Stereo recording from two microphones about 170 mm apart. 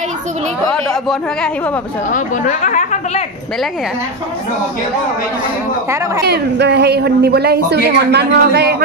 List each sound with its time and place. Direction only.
0.7 s speech: 5° left (ahead or behind)
2.1 s speech: 50° left (ahead or behind)
6.2 s a woman's voice: 80° right